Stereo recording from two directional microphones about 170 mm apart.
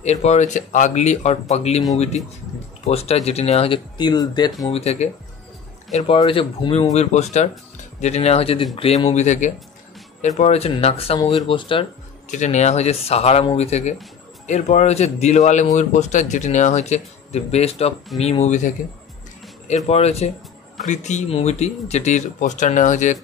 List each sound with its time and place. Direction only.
0.0 s speech: 40° left (ahead or behind)
2.9 s speech: 35° left (ahead or behind)
4.6 s speech: 35° left (ahead or behind)
6.1 s speech: 30° left (ahead or behind)
12.3 s speech: 45° left (ahead or behind)
19.7 s speech: 40° left (ahead or behind)